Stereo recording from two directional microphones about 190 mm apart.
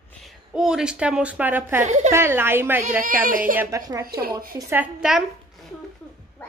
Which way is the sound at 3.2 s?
45° right (ahead or behind).